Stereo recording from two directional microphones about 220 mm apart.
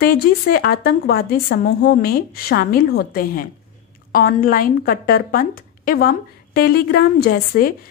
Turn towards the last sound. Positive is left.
turn(degrees=45)  # may be behind; listen again after turning